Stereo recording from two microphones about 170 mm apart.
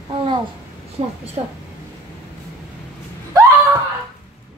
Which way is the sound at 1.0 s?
35° right (ahead or behind).